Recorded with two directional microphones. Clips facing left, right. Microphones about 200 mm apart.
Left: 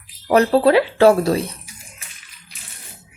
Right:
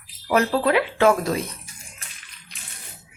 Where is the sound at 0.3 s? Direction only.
35° left (ahead or behind).